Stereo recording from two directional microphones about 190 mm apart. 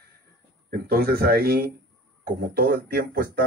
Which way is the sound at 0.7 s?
50° right (ahead or behind).